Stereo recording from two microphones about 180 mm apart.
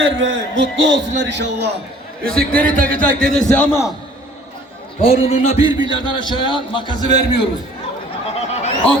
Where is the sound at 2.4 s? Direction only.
50° right (ahead or behind).